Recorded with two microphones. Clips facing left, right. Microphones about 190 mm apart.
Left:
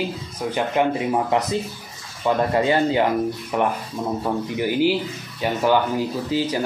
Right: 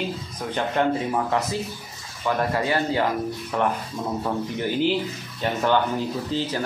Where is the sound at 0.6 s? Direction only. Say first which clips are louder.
Left 2 dB; 15° left (ahead or behind).